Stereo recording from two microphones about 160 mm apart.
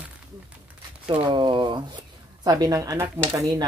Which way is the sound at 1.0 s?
30° right (ahead or behind).